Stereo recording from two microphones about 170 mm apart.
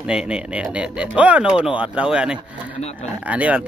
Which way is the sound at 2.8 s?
40° left (ahead or behind).